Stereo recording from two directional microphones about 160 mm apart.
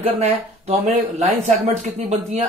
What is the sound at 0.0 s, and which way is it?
A man's voice, 45° right (ahead or behind).